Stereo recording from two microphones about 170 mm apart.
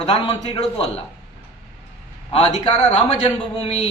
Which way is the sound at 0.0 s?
35° left (ahead or behind).